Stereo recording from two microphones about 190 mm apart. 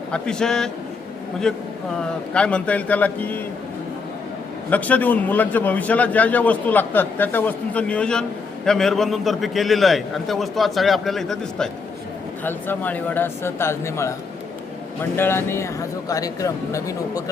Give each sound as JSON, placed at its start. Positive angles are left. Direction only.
{"t": 0.1, "sound": "a man's voice", "side_deg": 5}
{"t": 4.7, "sound": "a man's voice", "side_deg": 10}